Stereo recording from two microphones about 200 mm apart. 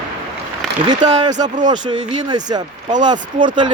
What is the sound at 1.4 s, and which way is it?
Speech, 20° right (ahead or behind).